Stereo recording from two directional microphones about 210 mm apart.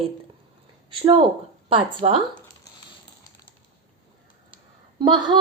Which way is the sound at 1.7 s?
25° right (ahead or behind).